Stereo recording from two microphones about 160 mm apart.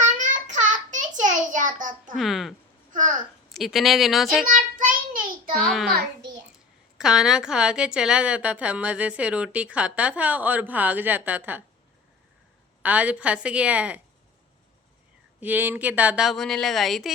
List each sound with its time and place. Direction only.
0.2 s child singing: 50° right (ahead or behind)
2.1 s a woman's voice: centre (ahead or behind)
2.9 s a child's voice: 50° right (ahead or behind)
3.5 s a woman's voice: centre (ahead or behind)
4.5 s child singing: 55° right (ahead or behind)
5.5 s a woman's voice: centre (ahead or behind)
7.0 s a woman's voice: 5° right (ahead or behind)
12.8 s a woman's voice: 10° right (ahead or behind)
15.4 s a woman's voice: 10° right (ahead or behind)